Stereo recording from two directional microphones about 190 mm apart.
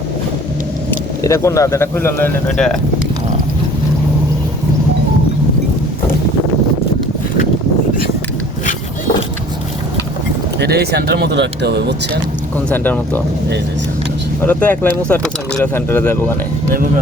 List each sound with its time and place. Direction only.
0.9 s speech: 15° left (ahead or behind)
10.6 s speech: 60° right (ahead or behind)
12.5 s speech: 10° left (ahead or behind)
14.4 s speech: 10° left (ahead or behind)